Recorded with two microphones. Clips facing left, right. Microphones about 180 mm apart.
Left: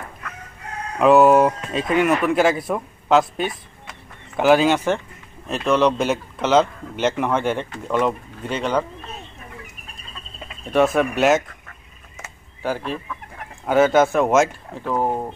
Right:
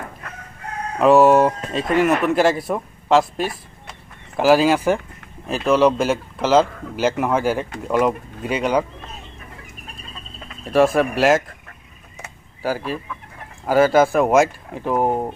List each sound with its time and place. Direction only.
0.9 s a man's voice: centre (ahead or behind)
10.6 s a man's voice: centre (ahead or behind)
12.6 s a man's voice: 5° right (ahead or behind)
14.7 s speech: 15° right (ahead or behind)